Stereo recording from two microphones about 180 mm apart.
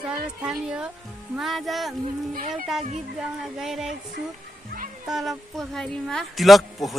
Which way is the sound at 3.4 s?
Centre (ahead or behind).